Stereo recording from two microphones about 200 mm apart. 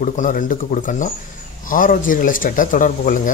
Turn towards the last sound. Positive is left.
turn(degrees=40)  # may be behind; listen again after turning